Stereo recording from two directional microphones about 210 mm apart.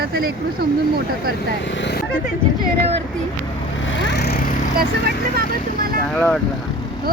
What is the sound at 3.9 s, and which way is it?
Vehicle, 60° left (ahead or behind).